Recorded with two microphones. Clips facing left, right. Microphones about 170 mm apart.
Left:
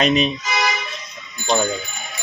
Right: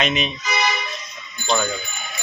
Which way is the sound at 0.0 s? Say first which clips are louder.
Left 5 dB; 35° left (ahead or behind).